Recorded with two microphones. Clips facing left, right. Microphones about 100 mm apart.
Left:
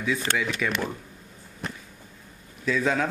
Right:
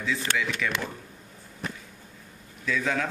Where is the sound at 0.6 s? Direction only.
20° left (ahead or behind).